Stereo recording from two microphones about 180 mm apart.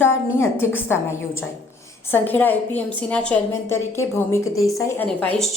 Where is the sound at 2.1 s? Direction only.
10° left (ahead or behind).